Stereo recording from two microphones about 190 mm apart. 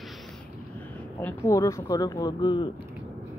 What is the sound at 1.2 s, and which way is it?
Speech, 15° left (ahead or behind).